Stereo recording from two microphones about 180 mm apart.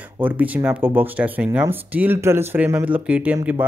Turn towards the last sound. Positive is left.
turn(degrees=-10)  # may be behind; listen again after turning